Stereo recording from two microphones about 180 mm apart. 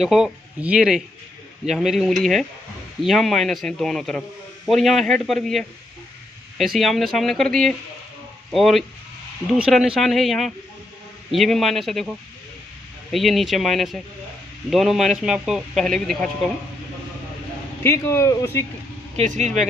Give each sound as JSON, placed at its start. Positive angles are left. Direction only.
{"t": 0.0, "sound": "speech", "side_deg": -5}
{"t": 13.1, "sound": "speech", "side_deg": 0}
{"t": 17.8, "sound": "a man's voice", "side_deg": 15}
{"t": 19.1, "sound": "speech", "side_deg": -40}